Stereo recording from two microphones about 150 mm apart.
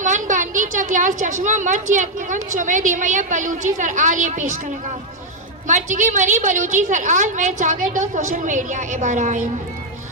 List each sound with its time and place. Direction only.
0.0 s a woman's voice: 55° right (ahead or behind)